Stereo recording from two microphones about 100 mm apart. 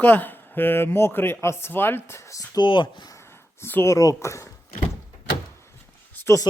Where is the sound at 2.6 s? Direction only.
55° left (ahead or behind).